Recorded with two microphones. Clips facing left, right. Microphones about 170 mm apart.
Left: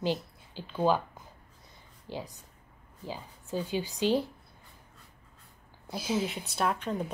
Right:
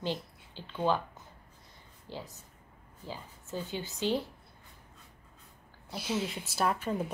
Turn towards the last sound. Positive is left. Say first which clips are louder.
# even
turn(degrees=-5)  # may be behind; listen again after turning